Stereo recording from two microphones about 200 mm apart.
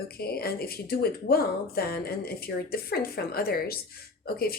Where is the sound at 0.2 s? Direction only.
50° left (ahead or behind).